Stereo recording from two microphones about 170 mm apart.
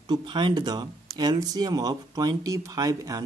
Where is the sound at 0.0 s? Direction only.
25° right (ahead or behind).